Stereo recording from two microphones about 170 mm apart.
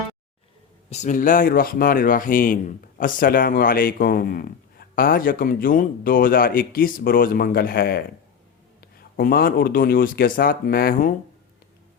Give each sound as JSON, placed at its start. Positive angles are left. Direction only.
{"t": 0.9, "sound": "a man's voice", "side_deg": 45}